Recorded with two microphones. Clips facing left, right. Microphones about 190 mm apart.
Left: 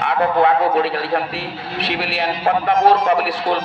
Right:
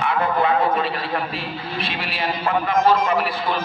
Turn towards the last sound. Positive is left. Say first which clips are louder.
# left 4 dB
turn(degrees=75)  # may be behind; listen again after turning